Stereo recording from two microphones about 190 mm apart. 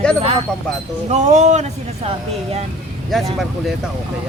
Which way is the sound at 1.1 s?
35° right (ahead or behind).